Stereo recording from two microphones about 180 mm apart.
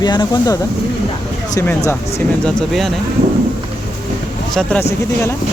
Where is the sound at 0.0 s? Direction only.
25° left (ahead or behind).